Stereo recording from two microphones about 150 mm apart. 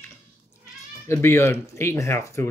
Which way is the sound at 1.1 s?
15° left (ahead or behind).